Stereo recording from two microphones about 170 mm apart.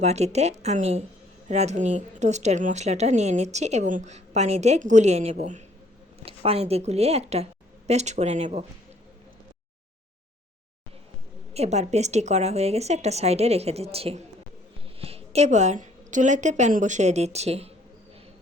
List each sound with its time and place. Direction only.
0.0 s a woman's voice: 40° right (ahead or behind)
11.5 s a woman's voice: 40° right (ahead or behind)